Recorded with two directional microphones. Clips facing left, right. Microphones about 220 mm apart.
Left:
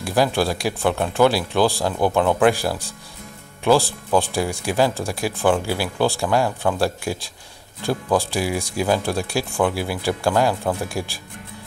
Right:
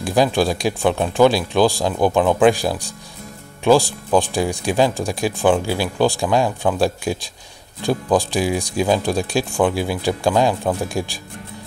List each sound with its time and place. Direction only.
0.0 s speech: 15° right (ahead or behind)